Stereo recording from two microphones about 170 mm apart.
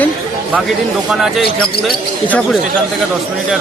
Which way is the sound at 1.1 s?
5° right (ahead or behind).